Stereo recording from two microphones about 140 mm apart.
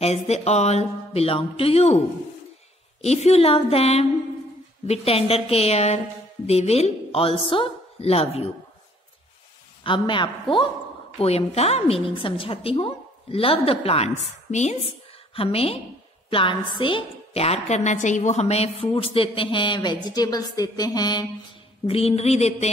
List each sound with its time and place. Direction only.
0.0 s a woman's voice: 50° left (ahead or behind)
3.0 s a woman's voice: 50° left (ahead or behind)
9.8 s a woman's voice: 35° left (ahead or behind)
11.1 s a woman's voice: 45° left (ahead or behind)
15.3 s a woman's voice: 40° left (ahead or behind)
21.8 s a woman's voice: 45° left (ahead or behind)